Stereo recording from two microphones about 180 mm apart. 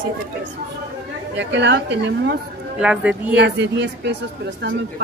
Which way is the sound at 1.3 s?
75° right (ahead or behind).